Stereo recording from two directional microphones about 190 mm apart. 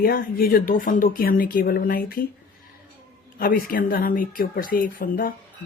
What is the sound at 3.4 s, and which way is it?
Speech, 50° left (ahead or behind).